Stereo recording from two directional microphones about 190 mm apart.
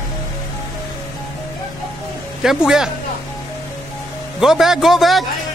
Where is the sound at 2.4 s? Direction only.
5° right (ahead or behind).